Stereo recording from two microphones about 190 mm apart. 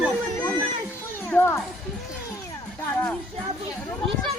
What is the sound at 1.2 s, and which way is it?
Speech, 10° left (ahead or behind).